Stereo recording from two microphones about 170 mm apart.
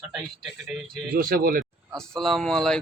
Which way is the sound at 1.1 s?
60° right (ahead or behind).